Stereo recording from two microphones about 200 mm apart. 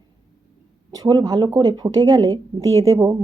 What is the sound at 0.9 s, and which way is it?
A woman's voice, 20° right (ahead or behind).